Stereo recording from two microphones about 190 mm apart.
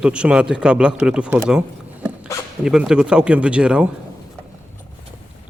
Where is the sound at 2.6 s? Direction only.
5° right (ahead or behind).